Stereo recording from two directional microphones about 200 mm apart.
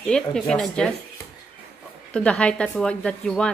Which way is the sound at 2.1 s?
5° left (ahead or behind).